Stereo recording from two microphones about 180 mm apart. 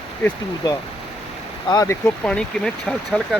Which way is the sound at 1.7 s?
20° left (ahead or behind).